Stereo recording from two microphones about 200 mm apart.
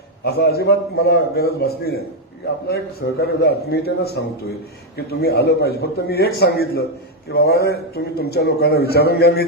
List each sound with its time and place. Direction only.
0.3 s a man's voice: 55° left (ahead or behind)